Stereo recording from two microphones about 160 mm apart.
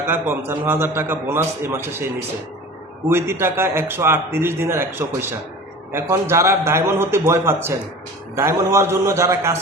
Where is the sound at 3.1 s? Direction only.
15° right (ahead or behind).